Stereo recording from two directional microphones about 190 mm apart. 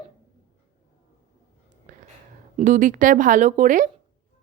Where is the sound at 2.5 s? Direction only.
40° right (ahead or behind).